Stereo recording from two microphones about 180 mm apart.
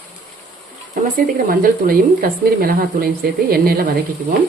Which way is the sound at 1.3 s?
55° right (ahead or behind).